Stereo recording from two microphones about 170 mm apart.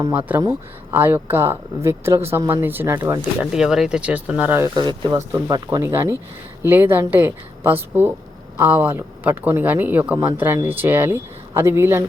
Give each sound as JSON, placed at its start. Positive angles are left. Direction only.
{"t": 0.0, "sound": "speech", "side_deg": -10}
{"t": 3.4, "sound": "speech", "side_deg": -5}
{"t": 4.7, "sound": "speech", "side_deg": -25}